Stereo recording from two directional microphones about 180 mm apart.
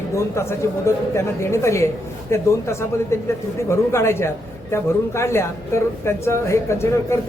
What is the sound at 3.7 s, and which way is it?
Speech, 15° left (ahead or behind).